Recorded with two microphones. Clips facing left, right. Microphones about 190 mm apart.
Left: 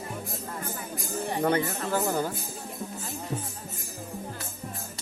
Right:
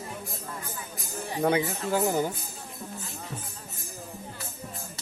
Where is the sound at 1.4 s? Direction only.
10° right (ahead or behind).